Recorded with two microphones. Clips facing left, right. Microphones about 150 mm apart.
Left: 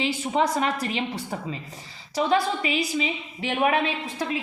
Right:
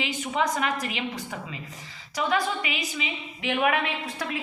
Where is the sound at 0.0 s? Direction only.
35° left (ahead or behind).